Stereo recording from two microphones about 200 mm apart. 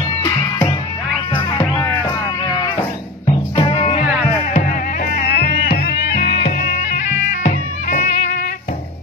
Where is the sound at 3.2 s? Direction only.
30° left (ahead or behind).